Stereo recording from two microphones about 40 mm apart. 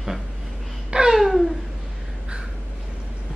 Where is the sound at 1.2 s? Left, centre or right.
Centre.